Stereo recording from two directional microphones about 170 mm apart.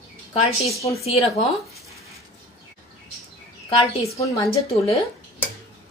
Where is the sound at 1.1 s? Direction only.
35° left (ahead or behind).